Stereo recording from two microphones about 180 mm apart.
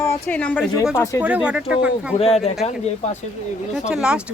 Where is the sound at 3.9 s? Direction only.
5° right (ahead or behind).